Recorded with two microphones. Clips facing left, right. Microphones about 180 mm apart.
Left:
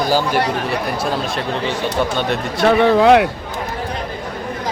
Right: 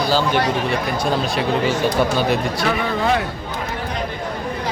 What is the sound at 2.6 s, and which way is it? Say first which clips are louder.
Speech: left 11 dB; 65° left (ahead or behind).